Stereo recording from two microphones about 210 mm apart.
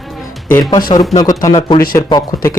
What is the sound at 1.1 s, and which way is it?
Speech, 15° left (ahead or behind).